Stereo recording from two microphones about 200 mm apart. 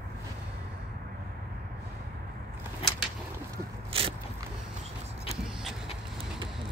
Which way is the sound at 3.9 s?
30° right (ahead or behind).